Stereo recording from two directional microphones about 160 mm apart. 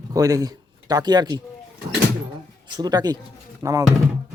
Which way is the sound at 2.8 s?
25° right (ahead or behind).